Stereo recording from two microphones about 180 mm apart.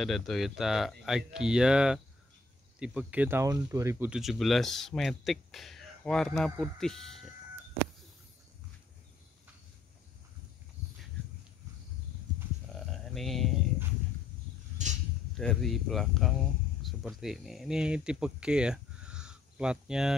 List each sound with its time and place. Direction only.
0.0 s speech: centre (ahead or behind)
4.2 s speech: centre (ahead or behind)
12.7 s a sound: centre (ahead or behind)
15.3 s speech: centre (ahead or behind)